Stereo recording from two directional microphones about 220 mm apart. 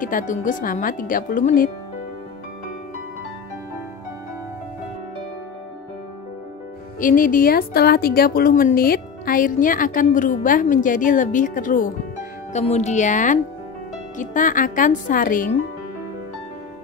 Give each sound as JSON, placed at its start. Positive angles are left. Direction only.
{"t": 0.0, "sound": "a woman's voice", "side_deg": 35}
{"t": 7.0, "sound": "a woman's voice", "side_deg": 40}